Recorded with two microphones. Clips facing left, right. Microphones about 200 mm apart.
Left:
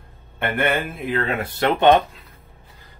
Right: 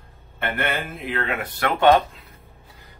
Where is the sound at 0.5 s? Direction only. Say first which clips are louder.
Left 6 dB; 50° left (ahead or behind).